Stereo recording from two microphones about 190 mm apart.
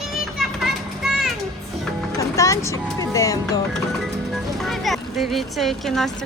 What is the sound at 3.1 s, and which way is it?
Speech, 20° left (ahead or behind).